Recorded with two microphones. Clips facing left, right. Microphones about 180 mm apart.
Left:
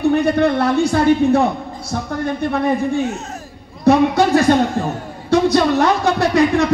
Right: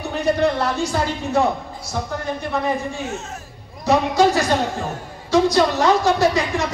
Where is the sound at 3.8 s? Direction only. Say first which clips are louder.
Left 3 dB; 60° left (ahead or behind).